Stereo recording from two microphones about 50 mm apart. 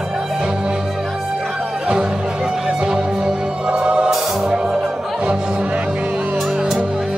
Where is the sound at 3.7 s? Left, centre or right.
Right.